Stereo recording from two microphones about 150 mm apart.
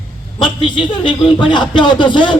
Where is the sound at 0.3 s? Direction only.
35° left (ahead or behind).